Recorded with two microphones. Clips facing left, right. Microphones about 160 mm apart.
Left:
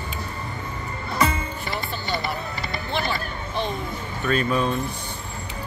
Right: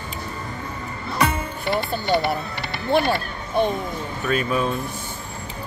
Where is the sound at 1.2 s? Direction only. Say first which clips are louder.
Right 1 dB; 65° right (ahead or behind).